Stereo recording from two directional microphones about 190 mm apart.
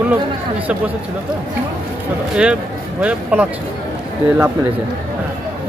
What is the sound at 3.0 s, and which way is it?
Speech, 10° right (ahead or behind).